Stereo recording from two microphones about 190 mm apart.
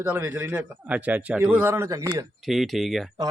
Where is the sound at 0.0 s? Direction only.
10° right (ahead or behind).